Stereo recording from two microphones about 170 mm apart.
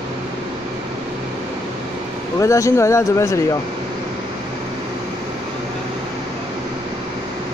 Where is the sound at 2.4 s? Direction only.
15° left (ahead or behind).